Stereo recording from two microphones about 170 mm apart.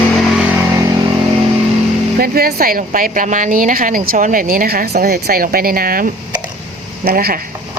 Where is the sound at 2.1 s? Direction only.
60° right (ahead or behind).